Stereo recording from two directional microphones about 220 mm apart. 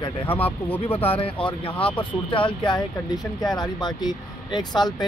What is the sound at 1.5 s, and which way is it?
Speech, 25° left (ahead or behind).